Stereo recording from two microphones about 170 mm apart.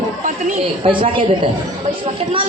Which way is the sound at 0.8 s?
30° right (ahead or behind).